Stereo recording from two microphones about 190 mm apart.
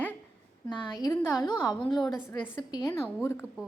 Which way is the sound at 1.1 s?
10° left (ahead or behind).